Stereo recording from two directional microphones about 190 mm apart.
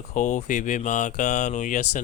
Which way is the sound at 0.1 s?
40° left (ahead or behind).